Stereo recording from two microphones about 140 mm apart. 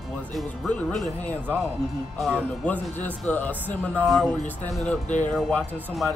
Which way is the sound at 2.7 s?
10° left (ahead or behind).